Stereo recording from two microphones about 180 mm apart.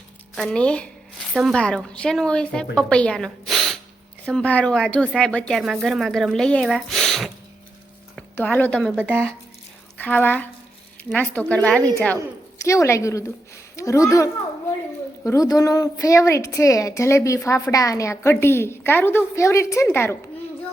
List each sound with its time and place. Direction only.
0.3 s a woman's voice: 5° left (ahead or behind)
8.1 s a sound: 10° left (ahead or behind)
8.8 s speech: 5° right (ahead or behind)
10.0 s a woman's voice: 10° left (ahead or behind)
12.6 s a woman's voice: 15° left (ahead or behind)